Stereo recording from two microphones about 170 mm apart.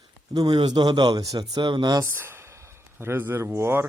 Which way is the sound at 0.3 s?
25° right (ahead or behind).